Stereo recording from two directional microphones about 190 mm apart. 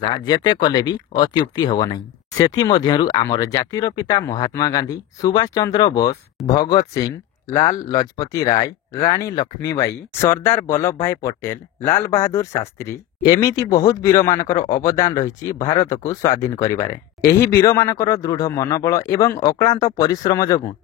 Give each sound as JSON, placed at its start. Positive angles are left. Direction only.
{"t": 0.0, "sound": "speech", "side_deg": 25}